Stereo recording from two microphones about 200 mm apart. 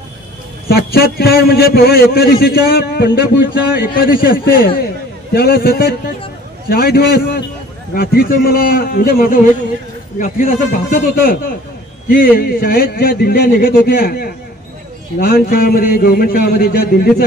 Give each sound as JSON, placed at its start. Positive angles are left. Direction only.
{"t": 0.7, "sound": "a man's voice", "side_deg": 50}